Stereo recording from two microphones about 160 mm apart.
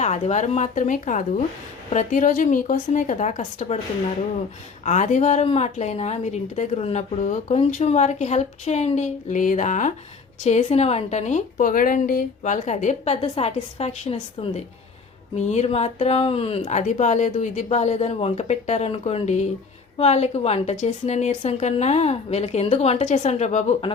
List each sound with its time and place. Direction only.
0.0 s a woman's voice: 45° left (ahead or behind)
4.9 s a woman's voice: 50° left (ahead or behind)